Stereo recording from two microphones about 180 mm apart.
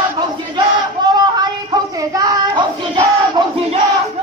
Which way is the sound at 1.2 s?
25° right (ahead or behind).